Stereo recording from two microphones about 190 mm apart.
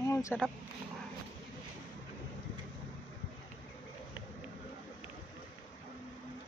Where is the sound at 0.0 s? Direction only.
15° left (ahead or behind).